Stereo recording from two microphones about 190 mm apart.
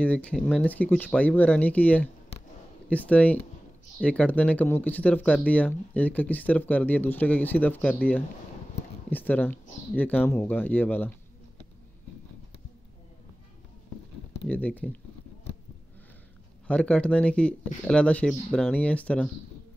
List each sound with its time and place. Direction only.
0.0 s speech: 5° left (ahead or behind)
14.5 s speech: 10° left (ahead or behind)
16.6 s speech: 5° left (ahead or behind)